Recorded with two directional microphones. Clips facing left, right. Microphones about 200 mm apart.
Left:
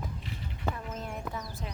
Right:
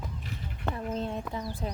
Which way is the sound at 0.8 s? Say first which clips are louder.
Right 5 dB; 30° right (ahead or behind).